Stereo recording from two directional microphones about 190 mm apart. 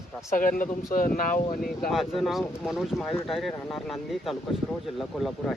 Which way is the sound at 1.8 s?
Centre (ahead or behind).